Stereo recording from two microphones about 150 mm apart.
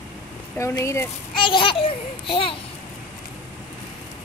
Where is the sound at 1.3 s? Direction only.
35° left (ahead or behind).